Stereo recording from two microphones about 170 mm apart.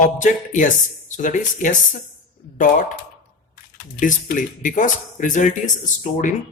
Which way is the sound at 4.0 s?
50° left (ahead or behind).